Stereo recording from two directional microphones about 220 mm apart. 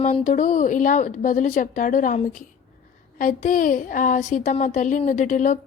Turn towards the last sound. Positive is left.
turn(degrees=35)  # may be behind; listen again after turning